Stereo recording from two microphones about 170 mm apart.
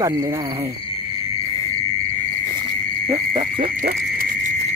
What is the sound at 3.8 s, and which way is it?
Frog, 50° right (ahead or behind).